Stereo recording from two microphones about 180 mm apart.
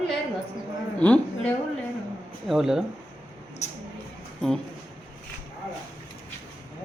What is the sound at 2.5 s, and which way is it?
Speech, 5° right (ahead or behind).